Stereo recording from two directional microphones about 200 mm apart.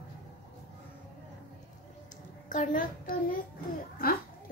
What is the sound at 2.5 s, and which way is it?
A child's voice, 40° left (ahead or behind).